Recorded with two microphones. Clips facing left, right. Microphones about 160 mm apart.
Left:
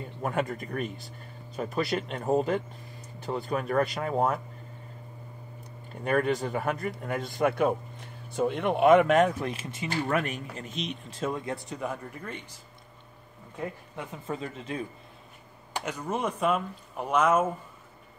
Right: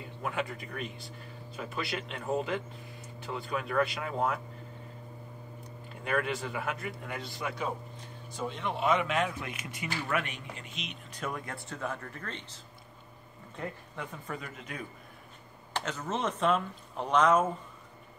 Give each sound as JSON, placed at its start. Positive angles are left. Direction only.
{"t": 0.0, "sound": "speech", "side_deg": 45}
{"t": 6.0, "sound": "a man's voice", "side_deg": 40}
{"t": 9.8, "sound": "speech", "side_deg": 40}
{"t": 13.6, "sound": "speech", "side_deg": 15}
{"t": 15.7, "sound": "speech", "side_deg": 10}